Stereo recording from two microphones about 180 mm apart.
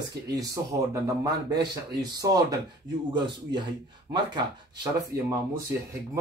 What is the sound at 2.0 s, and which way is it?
A man's voice, 20° right (ahead or behind).